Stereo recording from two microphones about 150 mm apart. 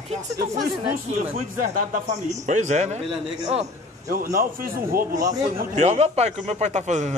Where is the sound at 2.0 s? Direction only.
55° right (ahead or behind).